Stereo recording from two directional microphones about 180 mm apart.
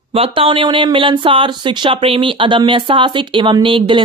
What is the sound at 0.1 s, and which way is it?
Speech, 30° right (ahead or behind).